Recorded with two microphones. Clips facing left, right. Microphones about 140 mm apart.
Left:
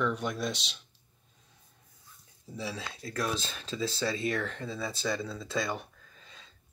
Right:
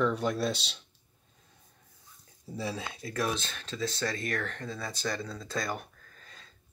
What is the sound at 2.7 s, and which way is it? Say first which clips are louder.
Speech: right 2 dB; 20° right (ahead or behind).